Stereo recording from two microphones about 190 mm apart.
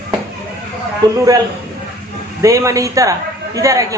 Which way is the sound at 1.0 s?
20° right (ahead or behind).